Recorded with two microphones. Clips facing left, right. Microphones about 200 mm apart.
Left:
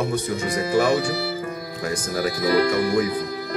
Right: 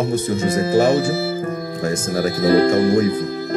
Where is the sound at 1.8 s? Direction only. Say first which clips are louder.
Right 4 dB; 25° right (ahead or behind).